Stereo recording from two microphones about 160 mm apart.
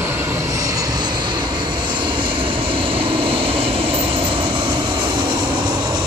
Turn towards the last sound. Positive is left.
turn(degrees=-30)  # may be behind; listen again after turning